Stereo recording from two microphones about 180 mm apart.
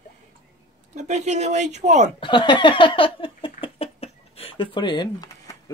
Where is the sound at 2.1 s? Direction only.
25° left (ahead or behind).